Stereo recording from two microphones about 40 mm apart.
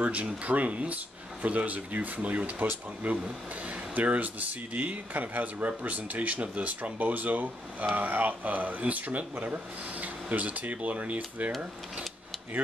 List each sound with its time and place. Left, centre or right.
0.0 s speech: right